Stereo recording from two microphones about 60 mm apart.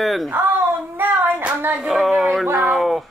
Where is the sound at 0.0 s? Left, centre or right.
Centre.